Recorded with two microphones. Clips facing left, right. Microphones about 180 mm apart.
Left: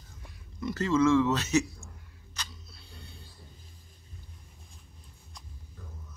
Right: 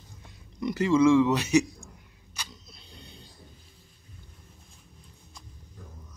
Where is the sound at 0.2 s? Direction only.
15° right (ahead or behind).